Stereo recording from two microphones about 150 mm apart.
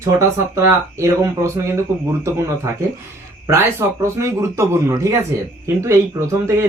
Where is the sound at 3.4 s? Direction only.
20° right (ahead or behind).